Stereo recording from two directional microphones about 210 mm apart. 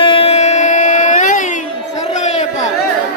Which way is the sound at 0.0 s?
25° left (ahead or behind).